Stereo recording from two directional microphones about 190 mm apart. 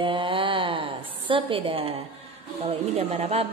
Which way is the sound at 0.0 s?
25° right (ahead or behind).